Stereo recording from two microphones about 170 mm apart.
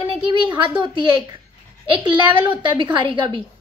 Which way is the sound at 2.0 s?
25° right (ahead or behind).